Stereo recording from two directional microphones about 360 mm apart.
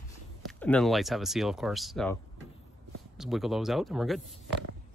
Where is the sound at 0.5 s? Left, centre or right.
Centre.